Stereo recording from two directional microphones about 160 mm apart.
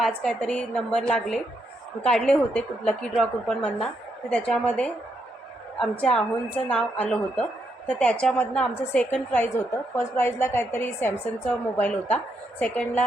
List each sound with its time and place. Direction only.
0.0 s a woman's voice: 5° left (ahead or behind)